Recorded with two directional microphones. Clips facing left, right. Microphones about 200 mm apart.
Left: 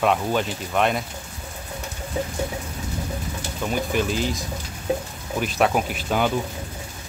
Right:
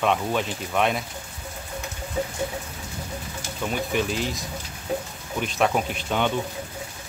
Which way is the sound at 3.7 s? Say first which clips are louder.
Left 2 dB; centre (ahead or behind).